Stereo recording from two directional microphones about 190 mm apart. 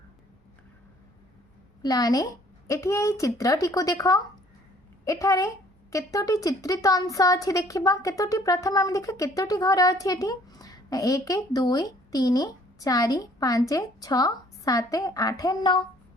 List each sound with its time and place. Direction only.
1.8 s a woman's voice: 20° left (ahead or behind)